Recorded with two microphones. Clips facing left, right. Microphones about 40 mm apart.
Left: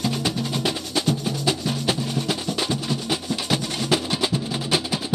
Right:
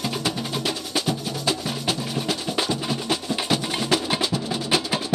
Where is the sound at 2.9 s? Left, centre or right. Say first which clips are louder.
Even; centre.